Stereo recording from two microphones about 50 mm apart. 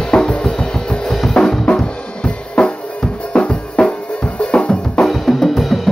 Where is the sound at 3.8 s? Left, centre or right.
Centre.